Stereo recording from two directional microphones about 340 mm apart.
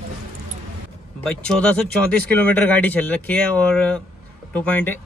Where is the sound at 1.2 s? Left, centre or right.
Centre.